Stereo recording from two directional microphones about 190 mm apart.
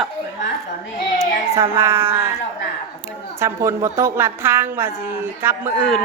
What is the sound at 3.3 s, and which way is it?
A woman's voice, 15° right (ahead or behind).